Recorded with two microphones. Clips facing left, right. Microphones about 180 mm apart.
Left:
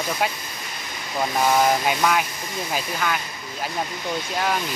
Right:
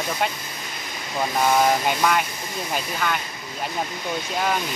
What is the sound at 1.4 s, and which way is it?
Speech, centre (ahead or behind).